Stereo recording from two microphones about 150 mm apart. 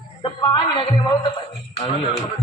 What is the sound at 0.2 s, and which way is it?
Music, 35° left (ahead or behind).